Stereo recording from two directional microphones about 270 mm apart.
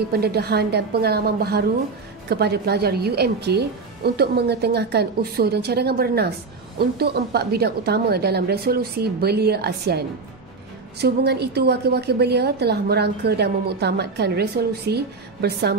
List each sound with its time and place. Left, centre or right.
0.1 s a woman's voice: right